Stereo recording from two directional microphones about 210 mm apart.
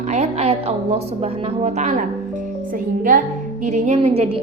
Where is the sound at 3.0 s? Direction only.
40° right (ahead or behind).